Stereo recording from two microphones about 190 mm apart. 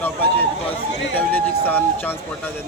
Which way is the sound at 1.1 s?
10° left (ahead or behind).